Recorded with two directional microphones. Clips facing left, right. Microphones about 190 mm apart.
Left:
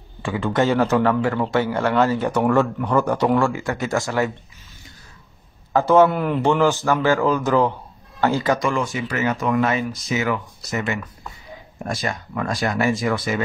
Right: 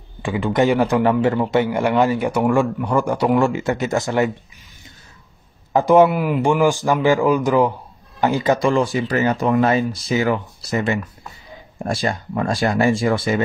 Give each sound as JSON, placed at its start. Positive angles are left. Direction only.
{"t": 0.2, "sound": "a man's voice", "side_deg": -15}
{"t": 5.7, "sound": "a man's voice", "side_deg": -15}